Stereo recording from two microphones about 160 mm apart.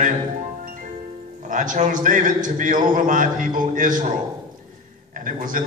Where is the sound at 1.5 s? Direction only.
55° right (ahead or behind).